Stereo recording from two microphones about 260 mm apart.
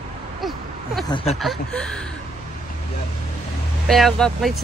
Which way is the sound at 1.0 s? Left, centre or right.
Left.